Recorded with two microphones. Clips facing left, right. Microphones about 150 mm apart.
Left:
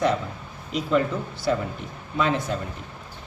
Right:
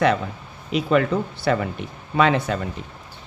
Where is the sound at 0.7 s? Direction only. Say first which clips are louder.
Right 4 dB; 75° right (ahead or behind).